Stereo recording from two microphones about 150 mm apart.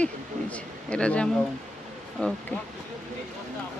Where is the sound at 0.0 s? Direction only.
10° left (ahead or behind).